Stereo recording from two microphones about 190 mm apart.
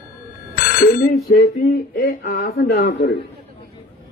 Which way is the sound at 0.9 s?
50° left (ahead or behind).